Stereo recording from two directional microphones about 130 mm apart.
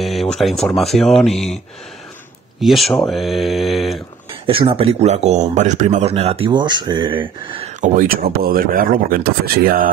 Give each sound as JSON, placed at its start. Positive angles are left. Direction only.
{"t": 0.0, "sound": "mantra", "side_deg": 0}
{"t": 2.6, "sound": "mantra", "side_deg": 0}
{"t": 4.5, "sound": "speech", "side_deg": -45}
{"t": 7.8, "sound": "speech", "side_deg": -90}